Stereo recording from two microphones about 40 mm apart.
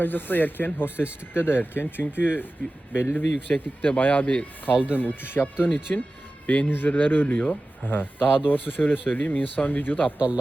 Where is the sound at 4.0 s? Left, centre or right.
Left.